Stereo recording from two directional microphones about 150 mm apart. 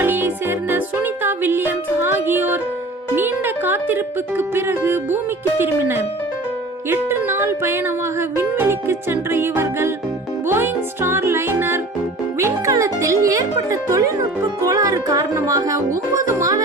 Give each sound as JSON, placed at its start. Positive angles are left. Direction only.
{"t": 0.0, "sound": "music", "side_deg": -15}
{"t": 3.2, "sound": "speech", "side_deg": -15}
{"t": 6.9, "sound": "music", "side_deg": -15}
{"t": 12.7, "sound": "speech", "side_deg": -20}